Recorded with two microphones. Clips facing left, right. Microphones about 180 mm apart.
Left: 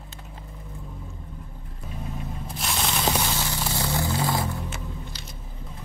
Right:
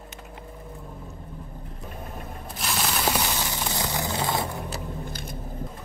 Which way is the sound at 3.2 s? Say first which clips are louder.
Even; 15° right (ahead or behind).